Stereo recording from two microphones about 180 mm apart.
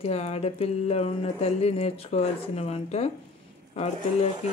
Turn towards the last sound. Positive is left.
turn(degrees=35)  # may be behind; listen again after turning